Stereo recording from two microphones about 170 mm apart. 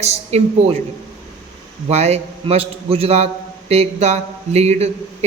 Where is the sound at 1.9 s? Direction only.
40° right (ahead or behind).